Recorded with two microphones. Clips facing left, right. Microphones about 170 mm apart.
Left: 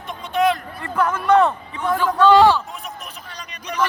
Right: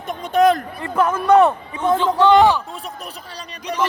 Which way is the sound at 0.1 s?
45° right (ahead or behind).